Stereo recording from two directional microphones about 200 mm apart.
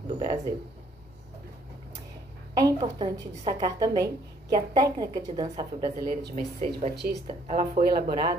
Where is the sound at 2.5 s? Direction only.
20° right (ahead or behind).